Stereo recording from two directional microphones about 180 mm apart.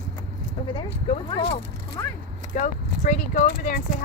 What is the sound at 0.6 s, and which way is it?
Speech, 30° left (ahead or behind).